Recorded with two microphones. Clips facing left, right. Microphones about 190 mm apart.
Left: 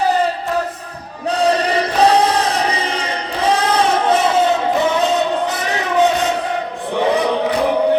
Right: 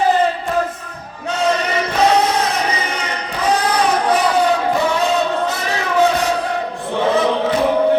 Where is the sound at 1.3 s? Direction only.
35° left (ahead or behind); by 6.3 s 20° left (ahead or behind).